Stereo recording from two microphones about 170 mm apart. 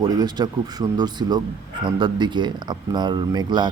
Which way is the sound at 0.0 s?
25° right (ahead or behind).